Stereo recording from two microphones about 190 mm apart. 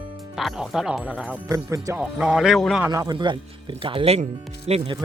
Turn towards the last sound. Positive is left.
turn(degrees=-30)  # may be behind; listen again after turning